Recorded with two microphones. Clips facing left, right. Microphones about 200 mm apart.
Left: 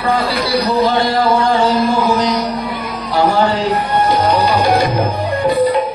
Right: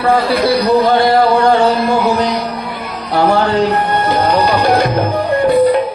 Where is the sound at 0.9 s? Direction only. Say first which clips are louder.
Right 3 dB; 60° right (ahead or behind).